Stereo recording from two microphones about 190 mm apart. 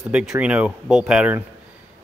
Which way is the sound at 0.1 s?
5° right (ahead or behind).